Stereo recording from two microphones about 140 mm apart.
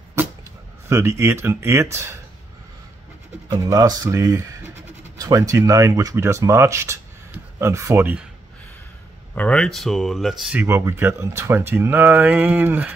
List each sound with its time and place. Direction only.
0.8 s speech: 15° right (ahead or behind)
3.4 s speech: 25° right (ahead or behind)
9.3 s speech: 10° left (ahead or behind)
10.6 s speech: 20° right (ahead or behind)